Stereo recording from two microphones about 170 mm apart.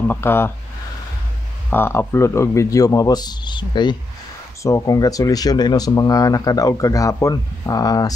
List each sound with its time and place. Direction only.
0.1 s speech: 15° left (ahead or behind)
1.7 s speech: 15° left (ahead or behind)